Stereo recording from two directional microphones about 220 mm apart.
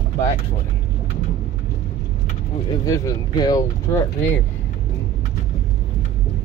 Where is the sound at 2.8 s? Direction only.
15° left (ahead or behind).